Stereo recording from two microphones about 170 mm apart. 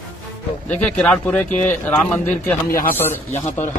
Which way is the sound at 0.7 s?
10° left (ahead or behind).